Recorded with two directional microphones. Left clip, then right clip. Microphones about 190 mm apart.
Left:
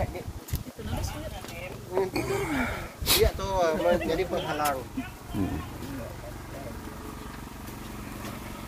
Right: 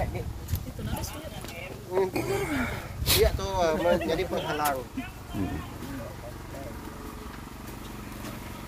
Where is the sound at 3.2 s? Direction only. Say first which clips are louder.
Even; 65° right (ahead or behind).